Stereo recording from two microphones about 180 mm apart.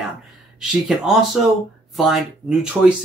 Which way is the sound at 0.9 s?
Centre (ahead or behind).